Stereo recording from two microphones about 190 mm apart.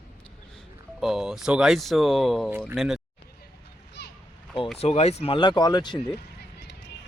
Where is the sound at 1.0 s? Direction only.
Centre (ahead or behind).